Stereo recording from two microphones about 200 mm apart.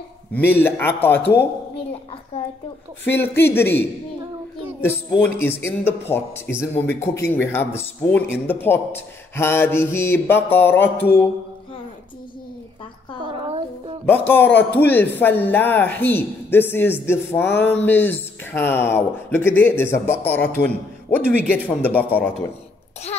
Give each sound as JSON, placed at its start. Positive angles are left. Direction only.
{"t": 0.4, "sound": "speech", "side_deg": 10}
{"t": 3.1, "sound": "speech", "side_deg": 10}
{"t": 5.2, "sound": "speech", "side_deg": 10}
{"t": 13.2, "sound": "a sound", "side_deg": -25}
{"t": 14.0, "sound": "speech", "side_deg": 10}